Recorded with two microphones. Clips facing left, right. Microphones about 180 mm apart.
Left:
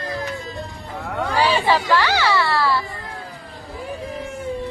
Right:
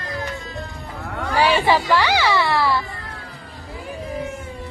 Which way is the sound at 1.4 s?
15° right (ahead or behind).